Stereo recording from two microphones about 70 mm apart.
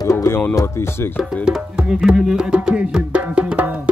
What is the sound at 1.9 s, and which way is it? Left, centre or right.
Music, centre.